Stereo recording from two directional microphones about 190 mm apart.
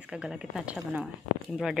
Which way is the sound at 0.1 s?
5° right (ahead or behind).